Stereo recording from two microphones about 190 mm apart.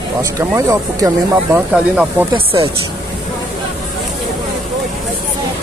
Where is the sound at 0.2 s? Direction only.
15° right (ahead or behind).